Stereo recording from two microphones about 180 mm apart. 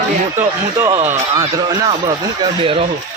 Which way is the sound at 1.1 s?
20° right (ahead or behind).